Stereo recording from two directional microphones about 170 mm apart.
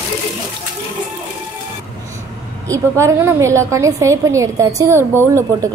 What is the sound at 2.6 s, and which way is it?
A woman's voice, 15° right (ahead or behind).